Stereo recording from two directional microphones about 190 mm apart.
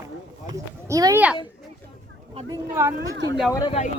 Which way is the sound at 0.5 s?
20° right (ahead or behind).